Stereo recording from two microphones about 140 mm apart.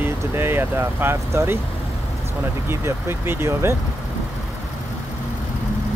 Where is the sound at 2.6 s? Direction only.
20° right (ahead or behind).